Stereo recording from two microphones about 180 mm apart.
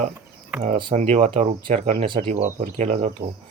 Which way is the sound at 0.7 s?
25° right (ahead or behind).